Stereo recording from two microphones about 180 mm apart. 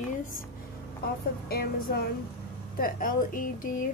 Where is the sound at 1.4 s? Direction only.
55° left (ahead or behind).